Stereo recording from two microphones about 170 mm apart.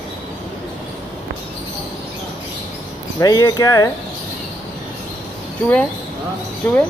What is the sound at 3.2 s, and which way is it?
Speech, 20° left (ahead or behind).